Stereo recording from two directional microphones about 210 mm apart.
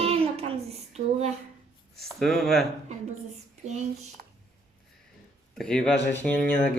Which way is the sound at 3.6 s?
35° right (ahead or behind).